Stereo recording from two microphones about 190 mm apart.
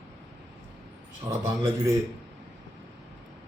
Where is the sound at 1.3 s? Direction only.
15° right (ahead or behind).